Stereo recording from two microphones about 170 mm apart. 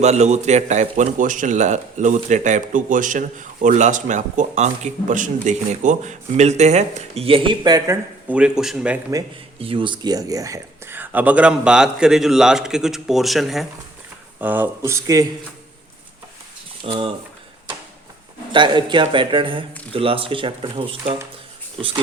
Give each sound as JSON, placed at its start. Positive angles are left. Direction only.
{"t": 0.0, "sound": "a man's voice", "side_deg": -40}
{"t": 8.3, "sound": "speech", "side_deg": -5}
{"t": 9.6, "sound": "speech", "side_deg": -30}
{"t": 14.3, "sound": "speech", "side_deg": -10}
{"t": 16.8, "sound": "speech", "side_deg": -30}
{"t": 18.5, "sound": "speech", "side_deg": -25}